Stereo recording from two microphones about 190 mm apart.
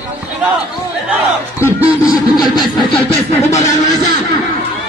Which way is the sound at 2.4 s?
20° left (ahead or behind).